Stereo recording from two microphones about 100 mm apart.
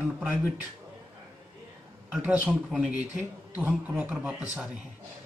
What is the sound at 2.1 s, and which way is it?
Speech, 15° right (ahead or behind).